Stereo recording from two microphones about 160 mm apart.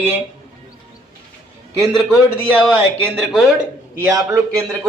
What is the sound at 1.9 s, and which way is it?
A man's voice, 5° left (ahead or behind).